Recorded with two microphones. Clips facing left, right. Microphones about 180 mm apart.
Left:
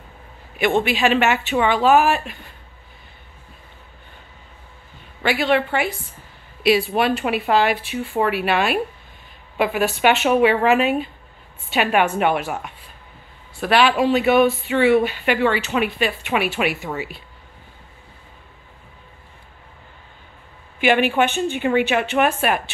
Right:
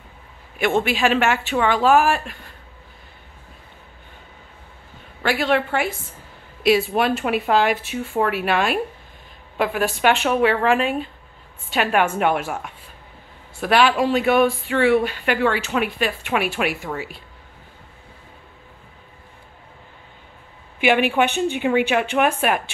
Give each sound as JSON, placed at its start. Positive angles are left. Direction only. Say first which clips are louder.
{"t": 0.6, "sound": "speech", "louder": "left 1 dB", "side_deg": 0}
{"t": 5.2, "sound": "speech", "louder": "left 1 dB", "side_deg": 0}
{"t": 20.8, "sound": "speech", "louder": "even", "side_deg": -5}